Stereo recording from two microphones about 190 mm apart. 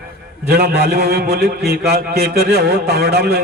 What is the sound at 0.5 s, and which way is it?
A man's voice, 55° right (ahead or behind).